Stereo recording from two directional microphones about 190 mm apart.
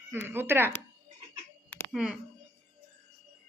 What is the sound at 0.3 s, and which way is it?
Speech, 10° right (ahead or behind).